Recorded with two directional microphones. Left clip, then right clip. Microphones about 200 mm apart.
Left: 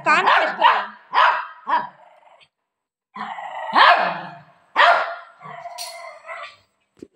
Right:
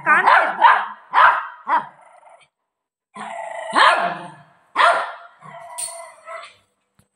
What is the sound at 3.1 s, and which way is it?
Dog, 30° right (ahead or behind).